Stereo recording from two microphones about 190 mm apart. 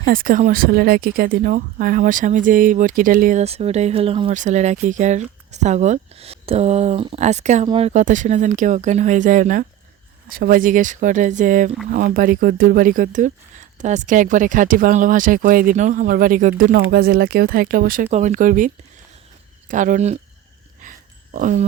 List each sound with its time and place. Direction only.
0.0 s speech: 45° right (ahead or behind)
3.4 s speech: 35° right (ahead or behind)
21.3 s speech: 40° right (ahead or behind)